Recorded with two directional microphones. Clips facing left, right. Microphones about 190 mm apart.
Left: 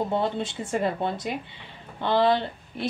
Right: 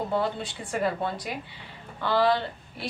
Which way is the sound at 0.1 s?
25° left (ahead or behind).